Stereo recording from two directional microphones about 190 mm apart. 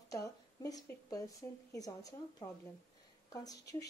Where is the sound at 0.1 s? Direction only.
15° left (ahead or behind).